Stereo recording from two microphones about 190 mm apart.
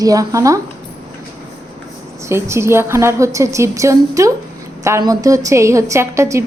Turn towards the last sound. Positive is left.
turn(degrees=-15)  # may be behind; listen again after turning